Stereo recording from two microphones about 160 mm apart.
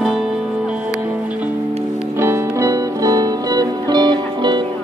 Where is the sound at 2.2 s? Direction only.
15° right (ahead or behind).